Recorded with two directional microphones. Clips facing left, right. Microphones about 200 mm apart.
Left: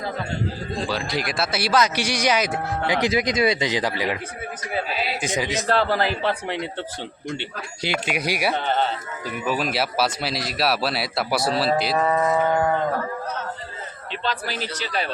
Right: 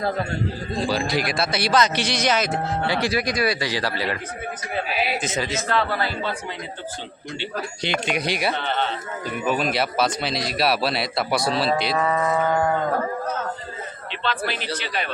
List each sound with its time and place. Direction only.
0.9 s a man's voice: centre (ahead or behind); by 4.2 s 15° left (ahead or behind)
4.9 s speech: 15° right (ahead or behind)
5.2 s a man's voice: 15° left (ahead or behind)
6.2 s speech: 75° left (ahead or behind)
8.0 s a man's voice: 10° left (ahead or behind)
8.5 s speech: 45° left (ahead or behind)
9.5 s speech: 5° left (ahead or behind)
12.0 s speech: 25° left (ahead or behind)
14.3 s a man's voice: 40° left (ahead or behind)